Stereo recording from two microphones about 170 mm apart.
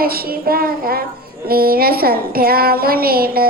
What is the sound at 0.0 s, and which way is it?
Child singing, 60° right (ahead or behind).